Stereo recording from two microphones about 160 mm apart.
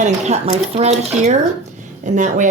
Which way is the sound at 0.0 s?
45° right (ahead or behind).